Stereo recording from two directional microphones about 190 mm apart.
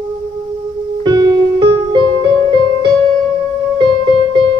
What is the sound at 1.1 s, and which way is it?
Music, 20° right (ahead or behind).